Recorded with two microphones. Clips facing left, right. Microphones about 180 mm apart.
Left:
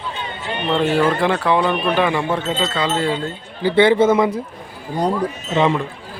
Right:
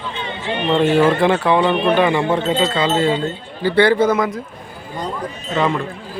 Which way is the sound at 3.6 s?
15° left (ahead or behind).